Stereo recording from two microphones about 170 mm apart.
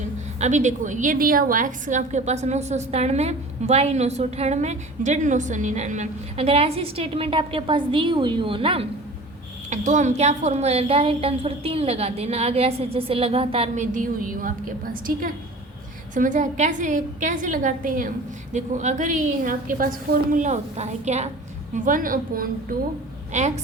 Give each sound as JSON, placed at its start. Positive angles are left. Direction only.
{"t": 0.3, "sound": "a woman's voice", "side_deg": -45}
{"t": 9.6, "sound": "a woman's voice", "side_deg": -45}
{"t": 13.9, "sound": "a woman's voice", "side_deg": -55}
{"t": 16.1, "sound": "a woman's voice", "side_deg": -50}
{"t": 21.8, "sound": "a woman's voice", "side_deg": -55}